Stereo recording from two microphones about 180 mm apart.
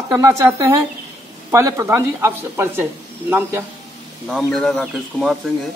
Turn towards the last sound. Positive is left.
turn(degrees=0)  # may be behind; listen again after turning